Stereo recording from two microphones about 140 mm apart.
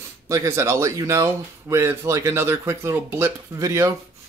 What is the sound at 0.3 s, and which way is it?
Speech, 20° right (ahead or behind).